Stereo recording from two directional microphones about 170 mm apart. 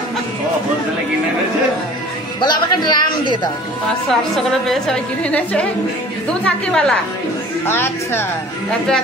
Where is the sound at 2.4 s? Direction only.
25° left (ahead or behind).